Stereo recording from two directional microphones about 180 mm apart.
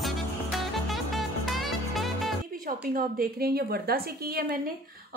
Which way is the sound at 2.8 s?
55° right (ahead or behind).